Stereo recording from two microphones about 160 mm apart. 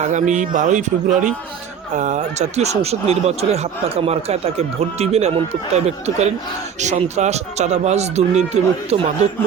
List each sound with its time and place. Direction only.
0.0 s a man's voice: 50° right (ahead or behind)